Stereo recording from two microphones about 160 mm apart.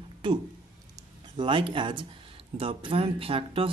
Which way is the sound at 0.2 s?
30° right (ahead or behind).